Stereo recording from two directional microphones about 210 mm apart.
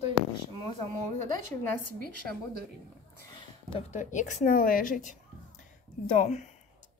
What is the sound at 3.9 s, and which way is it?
A woman's voice, 35° left (ahead or behind).